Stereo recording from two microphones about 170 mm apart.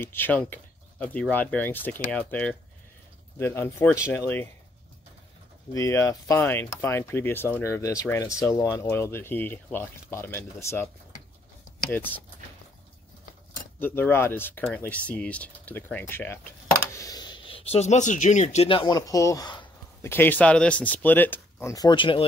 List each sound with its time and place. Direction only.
0.0 s speech: 10° left (ahead or behind)
5.7 s speech: 15° left (ahead or behind)
11.9 s speech: 10° left (ahead or behind)
13.7 s speech: 10° left (ahead or behind)
20.0 s speech: 10° left (ahead or behind); by 22.2 s 30° left (ahead or behind)